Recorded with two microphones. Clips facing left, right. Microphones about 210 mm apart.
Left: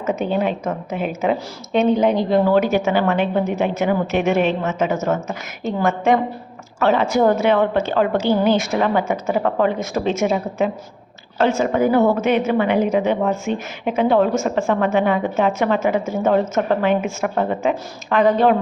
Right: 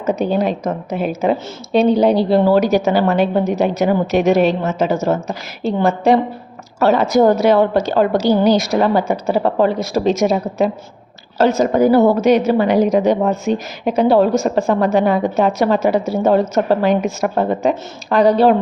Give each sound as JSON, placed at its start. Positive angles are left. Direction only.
{"t": 0.0, "sound": "a woman's voice", "side_deg": -35}